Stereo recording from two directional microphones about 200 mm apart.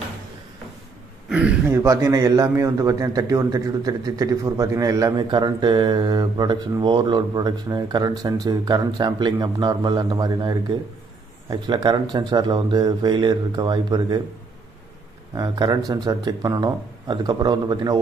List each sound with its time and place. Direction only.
1.3 s a man's voice: 10° right (ahead or behind)
15.3 s a man's voice: 20° right (ahead or behind)